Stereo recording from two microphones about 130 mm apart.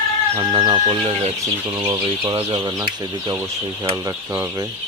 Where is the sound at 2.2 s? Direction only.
40° right (ahead or behind).